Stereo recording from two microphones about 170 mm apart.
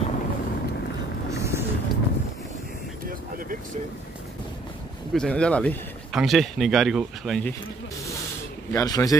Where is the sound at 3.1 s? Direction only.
55° right (ahead or behind).